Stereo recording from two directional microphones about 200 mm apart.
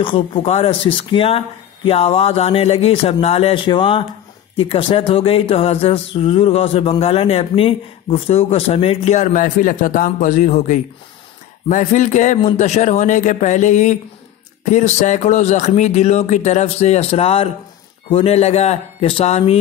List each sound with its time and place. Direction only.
0.0 s speech: 25° left (ahead or behind)